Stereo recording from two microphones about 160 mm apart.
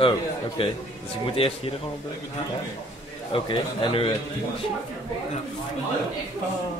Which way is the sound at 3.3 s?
30° left (ahead or behind).